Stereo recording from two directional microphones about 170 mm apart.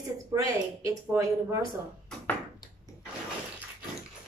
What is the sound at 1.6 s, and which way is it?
Speech, 5° left (ahead or behind).